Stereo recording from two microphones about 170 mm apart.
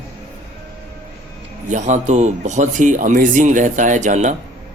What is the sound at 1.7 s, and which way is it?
Speech, 45° right (ahead or behind).